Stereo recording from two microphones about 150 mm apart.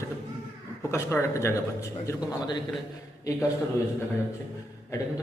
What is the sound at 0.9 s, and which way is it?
Speech, 20° left (ahead or behind).